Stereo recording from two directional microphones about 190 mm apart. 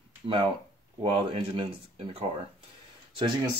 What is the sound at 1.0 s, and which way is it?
Speech, 30° right (ahead or behind).